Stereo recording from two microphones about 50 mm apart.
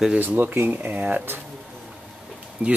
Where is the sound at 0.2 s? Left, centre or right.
Right.